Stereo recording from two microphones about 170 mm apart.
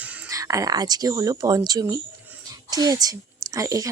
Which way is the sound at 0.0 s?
20° right (ahead or behind).